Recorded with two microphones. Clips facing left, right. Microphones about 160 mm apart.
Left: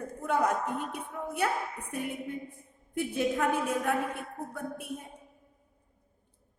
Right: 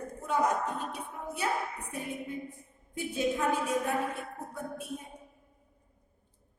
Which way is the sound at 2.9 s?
60° left (ahead or behind).